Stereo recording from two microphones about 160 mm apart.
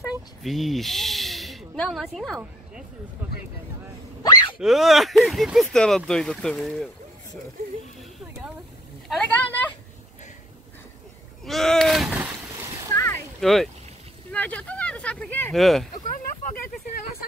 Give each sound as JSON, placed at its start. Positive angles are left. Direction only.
{"t": 0.0, "sound": "speech", "side_deg": 0}
{"t": 4.2, "sound": "a sound", "side_deg": 25}
{"t": 4.6, "sound": "speech", "side_deg": 0}
{"t": 9.1, "sound": "speech", "side_deg": 5}
{"t": 11.4, "sound": "boat", "side_deg": 0}
{"t": 12.9, "sound": "boat", "side_deg": 15}
{"t": 13.4, "sound": "speech", "side_deg": 0}
{"t": 14.3, "sound": "a sound", "side_deg": 10}
{"t": 15.5, "sound": "speech", "side_deg": 0}